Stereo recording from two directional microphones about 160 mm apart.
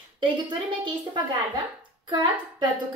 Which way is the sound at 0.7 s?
30° right (ahead or behind).